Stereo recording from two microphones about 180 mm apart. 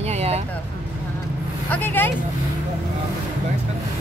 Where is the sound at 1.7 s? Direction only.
10° left (ahead or behind).